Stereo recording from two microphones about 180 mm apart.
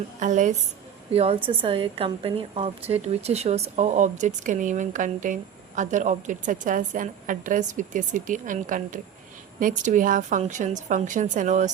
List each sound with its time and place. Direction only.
0.2 s a woman's voice: 45° right (ahead or behind)